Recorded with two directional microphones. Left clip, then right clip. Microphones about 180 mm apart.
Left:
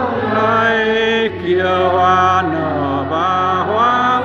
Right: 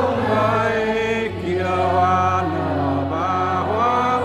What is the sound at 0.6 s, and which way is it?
Music, 15° left (ahead or behind).